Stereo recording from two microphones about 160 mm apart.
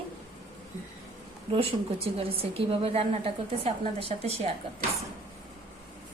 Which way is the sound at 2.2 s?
35° right (ahead or behind).